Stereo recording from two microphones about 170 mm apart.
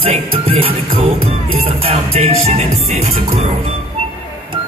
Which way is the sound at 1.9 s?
35° right (ahead or behind).